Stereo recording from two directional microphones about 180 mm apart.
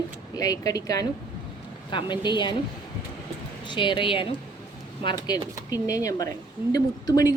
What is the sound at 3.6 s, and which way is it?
Speech, 25° left (ahead or behind).